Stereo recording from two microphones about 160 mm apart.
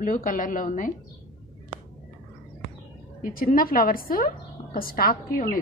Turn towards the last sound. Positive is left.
turn(degrees=65)  # may be behind; listen again after turning